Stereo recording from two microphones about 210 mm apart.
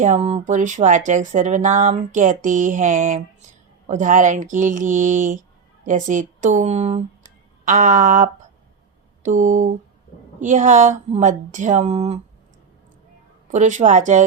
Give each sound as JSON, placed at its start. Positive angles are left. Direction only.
{"t": 0.0, "sound": "speech", "side_deg": -35}
{"t": 13.5, "sound": "speech", "side_deg": -35}